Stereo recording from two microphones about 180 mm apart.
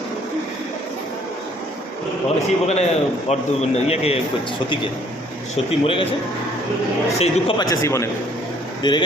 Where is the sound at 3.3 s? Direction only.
35° left (ahead or behind).